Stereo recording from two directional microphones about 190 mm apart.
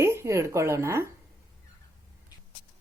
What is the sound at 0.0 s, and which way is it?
A woman's voice, 15° right (ahead or behind).